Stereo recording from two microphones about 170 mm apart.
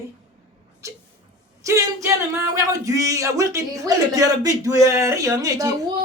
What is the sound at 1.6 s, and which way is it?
Speech, 20° right (ahead or behind).